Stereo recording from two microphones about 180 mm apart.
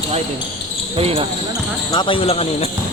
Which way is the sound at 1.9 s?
25° left (ahead or behind).